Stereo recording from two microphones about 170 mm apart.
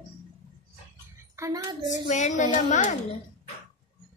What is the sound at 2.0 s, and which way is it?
Speech, 45° left (ahead or behind).